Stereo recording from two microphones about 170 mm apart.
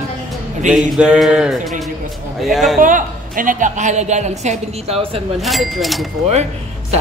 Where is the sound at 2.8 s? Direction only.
50° right (ahead or behind); by 5.2 s 35° right (ahead or behind).